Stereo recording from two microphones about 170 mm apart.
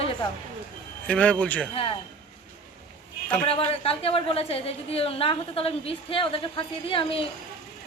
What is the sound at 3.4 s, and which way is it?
A woman's voice, 35° left (ahead or behind).